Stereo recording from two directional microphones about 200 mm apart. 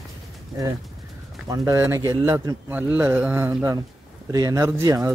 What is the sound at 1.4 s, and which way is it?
A man's voice, 15° right (ahead or behind).